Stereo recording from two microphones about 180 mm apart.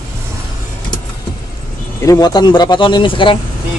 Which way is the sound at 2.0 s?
20° left (ahead or behind).